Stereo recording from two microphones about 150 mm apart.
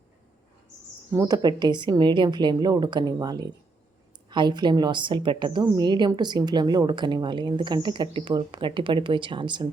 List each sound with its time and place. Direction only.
1.1 s a woman's voice: 20° right (ahead or behind)